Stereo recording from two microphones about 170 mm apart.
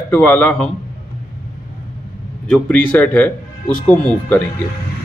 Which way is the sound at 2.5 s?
10° left (ahead or behind).